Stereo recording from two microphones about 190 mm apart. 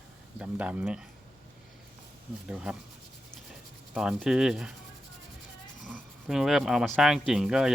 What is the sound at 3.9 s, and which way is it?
Speech, 5° right (ahead or behind).